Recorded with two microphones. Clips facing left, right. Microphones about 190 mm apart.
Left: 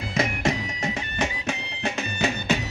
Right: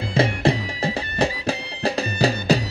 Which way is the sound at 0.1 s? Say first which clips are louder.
Right 5 dB; 30° right (ahead or behind).